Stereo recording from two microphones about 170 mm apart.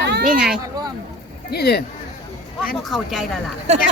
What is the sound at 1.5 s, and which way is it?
Speech, 70° left (ahead or behind).